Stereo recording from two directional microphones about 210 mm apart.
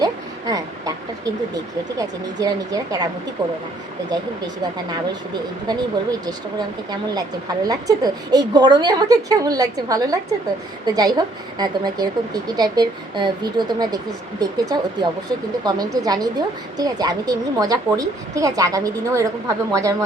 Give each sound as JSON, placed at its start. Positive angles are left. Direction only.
{"t": 0.0, "sound": "a sound", "side_deg": -20}
{"t": 2.0, "sound": "a woman's voice", "side_deg": -15}
{"t": 5.6, "sound": "a woman's voice", "side_deg": -20}